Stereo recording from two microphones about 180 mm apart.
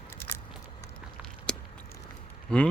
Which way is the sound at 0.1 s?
15° left (ahead or behind).